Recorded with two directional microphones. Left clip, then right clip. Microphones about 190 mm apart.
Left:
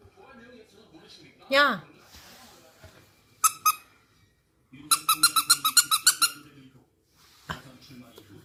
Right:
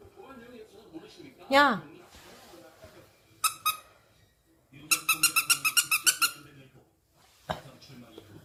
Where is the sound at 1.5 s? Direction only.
15° right (ahead or behind).